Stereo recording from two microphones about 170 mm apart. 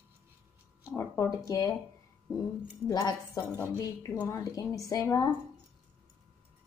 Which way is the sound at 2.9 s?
25° left (ahead or behind).